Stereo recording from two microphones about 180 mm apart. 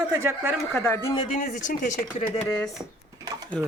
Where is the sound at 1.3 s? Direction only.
45° left (ahead or behind).